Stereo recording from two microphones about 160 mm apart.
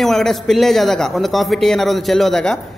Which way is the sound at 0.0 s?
Centre (ahead or behind).